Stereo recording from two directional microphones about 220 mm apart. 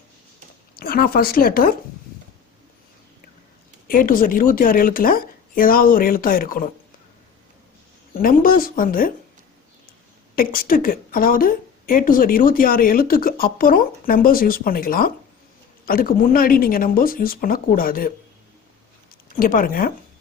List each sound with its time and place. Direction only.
0.8 s speech: 45° left (ahead or behind)
3.8 s a woman's voice: 40° left (ahead or behind)
8.1 s a woman's voice: 40° left (ahead or behind)
10.3 s a woman's voice: 40° left (ahead or behind)
19.3 s a woman's voice: 40° left (ahead or behind)